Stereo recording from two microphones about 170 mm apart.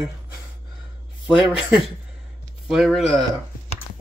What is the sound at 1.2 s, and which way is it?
Speech, 5° right (ahead or behind).